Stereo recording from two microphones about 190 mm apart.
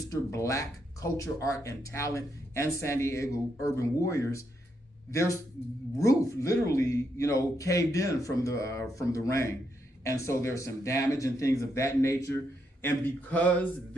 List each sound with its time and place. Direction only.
0.0 s speech: 15° left (ahead or behind)